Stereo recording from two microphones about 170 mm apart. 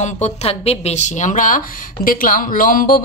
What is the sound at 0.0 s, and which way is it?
A woman's voice, 40° left (ahead or behind).